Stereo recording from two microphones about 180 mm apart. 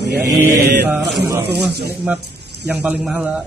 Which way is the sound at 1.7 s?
60° right (ahead or behind).